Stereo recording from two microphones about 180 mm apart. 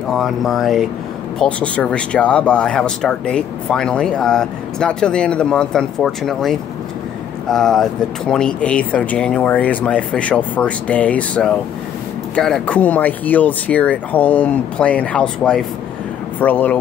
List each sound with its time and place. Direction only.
0.1 s speech: centre (ahead or behind)